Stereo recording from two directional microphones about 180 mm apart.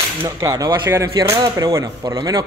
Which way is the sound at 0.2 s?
20° right (ahead or behind).